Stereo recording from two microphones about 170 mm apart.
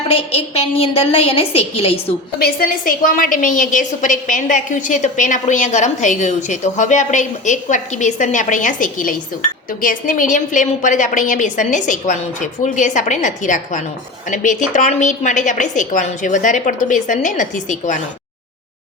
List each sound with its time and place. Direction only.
0.1 s a woman's voice: 35° left (ahead or behind)
2.4 s a woman's voice: 55° left (ahead or behind)